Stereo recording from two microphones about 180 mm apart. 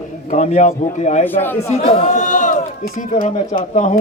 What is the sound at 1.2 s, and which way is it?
Speech, 10° left (ahead or behind).